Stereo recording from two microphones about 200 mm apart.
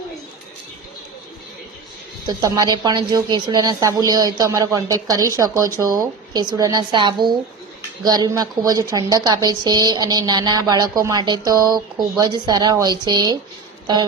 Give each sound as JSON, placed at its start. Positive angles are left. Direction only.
{"t": 2.2, "sound": "a woman's voice", "side_deg": -20}